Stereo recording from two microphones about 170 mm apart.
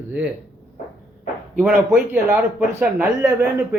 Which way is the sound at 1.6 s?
10° right (ahead or behind).